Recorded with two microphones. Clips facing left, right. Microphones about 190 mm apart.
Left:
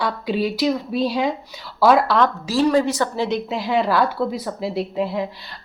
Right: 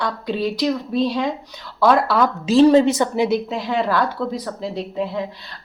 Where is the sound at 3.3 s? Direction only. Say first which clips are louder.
Right 1 dB; centre (ahead or behind).